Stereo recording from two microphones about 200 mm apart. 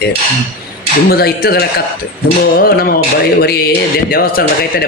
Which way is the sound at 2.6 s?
45° left (ahead or behind).